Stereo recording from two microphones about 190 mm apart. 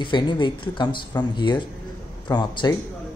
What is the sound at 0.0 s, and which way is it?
Speech, 25° left (ahead or behind).